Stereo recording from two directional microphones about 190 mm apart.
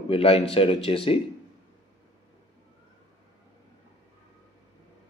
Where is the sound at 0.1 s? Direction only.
30° left (ahead or behind).